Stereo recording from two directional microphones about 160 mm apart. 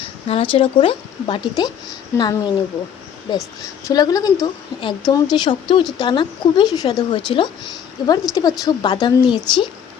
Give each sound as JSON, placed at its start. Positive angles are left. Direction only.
{"t": 0.3, "sound": "a woman's voice", "side_deg": 35}